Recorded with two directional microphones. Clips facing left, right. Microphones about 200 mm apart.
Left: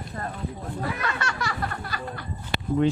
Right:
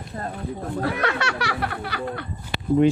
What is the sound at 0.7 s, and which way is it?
Speech, 70° right (ahead or behind).